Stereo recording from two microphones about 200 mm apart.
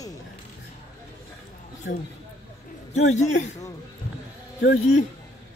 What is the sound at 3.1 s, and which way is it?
Speech, 35° left (ahead or behind).